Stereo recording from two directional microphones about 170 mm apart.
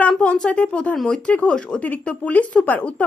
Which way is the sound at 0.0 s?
5° left (ahead or behind).